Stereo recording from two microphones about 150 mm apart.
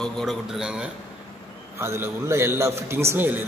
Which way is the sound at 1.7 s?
15° right (ahead or behind).